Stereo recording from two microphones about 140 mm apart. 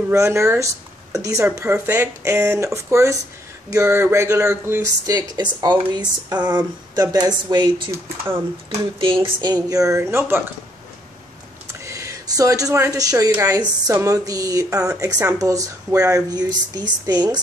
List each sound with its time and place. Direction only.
0.1 s speech: 20° right (ahead or behind)
11.8 s speech: 20° right (ahead or behind)